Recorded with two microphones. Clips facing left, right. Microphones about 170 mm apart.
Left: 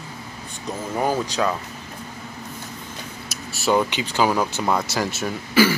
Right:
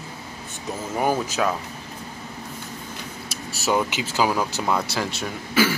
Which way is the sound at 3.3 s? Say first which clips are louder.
Right 1 dB; 35° right (ahead or behind).